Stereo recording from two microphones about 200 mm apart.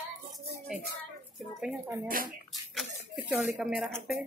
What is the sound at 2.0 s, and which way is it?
Speech, 45° right (ahead or behind).